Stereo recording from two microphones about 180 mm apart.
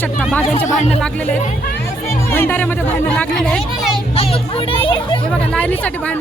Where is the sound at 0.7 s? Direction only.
40° left (ahead or behind).